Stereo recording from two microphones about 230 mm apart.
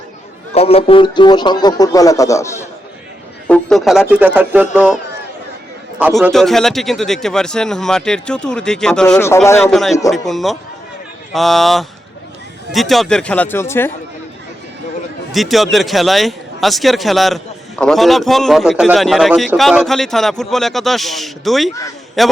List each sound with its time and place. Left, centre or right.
0.5 s speech: left
3.4 s a sound: centre
4.1 s speech: centre
6.0 s speech: centre
10.1 s speech: centre
15.3 s speech: centre